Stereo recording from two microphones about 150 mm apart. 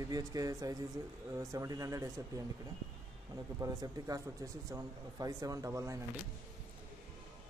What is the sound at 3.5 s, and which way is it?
Speech, 20° right (ahead or behind).